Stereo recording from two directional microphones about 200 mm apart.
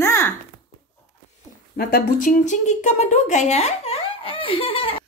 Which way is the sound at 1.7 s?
45° left (ahead or behind).